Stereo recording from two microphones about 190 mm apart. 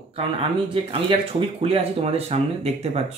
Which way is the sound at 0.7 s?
25° right (ahead or behind).